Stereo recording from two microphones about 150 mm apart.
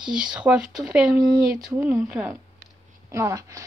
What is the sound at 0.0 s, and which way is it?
Speech, 5° right (ahead or behind).